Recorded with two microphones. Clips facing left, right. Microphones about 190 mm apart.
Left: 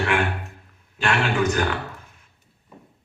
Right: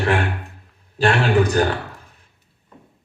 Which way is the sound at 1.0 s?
35° right (ahead or behind).